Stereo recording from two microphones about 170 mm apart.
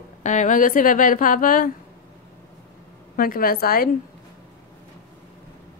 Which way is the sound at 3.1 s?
60° left (ahead or behind).